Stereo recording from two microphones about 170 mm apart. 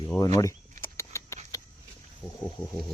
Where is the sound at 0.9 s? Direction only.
15° left (ahead or behind).